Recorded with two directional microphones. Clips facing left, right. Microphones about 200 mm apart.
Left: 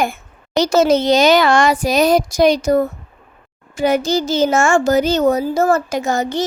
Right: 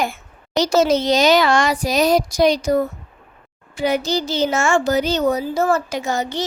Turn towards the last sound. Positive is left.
turn(degrees=45)  # may be behind; listen again after turning